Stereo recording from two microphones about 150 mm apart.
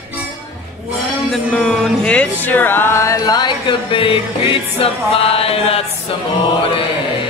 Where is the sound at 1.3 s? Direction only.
5° left (ahead or behind); by 5.8 s 40° left (ahead or behind).